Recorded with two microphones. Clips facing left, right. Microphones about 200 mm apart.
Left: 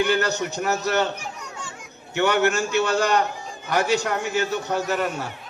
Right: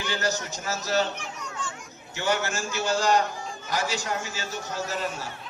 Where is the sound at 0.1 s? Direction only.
60° left (ahead or behind).